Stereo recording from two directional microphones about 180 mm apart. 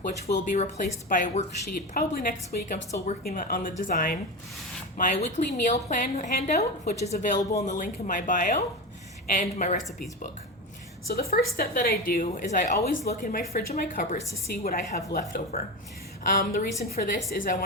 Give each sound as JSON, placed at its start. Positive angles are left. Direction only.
{"t": 0.4, "sound": "a woman's voice", "side_deg": 40}
{"t": 11.1, "sound": "a woman's voice", "side_deg": 60}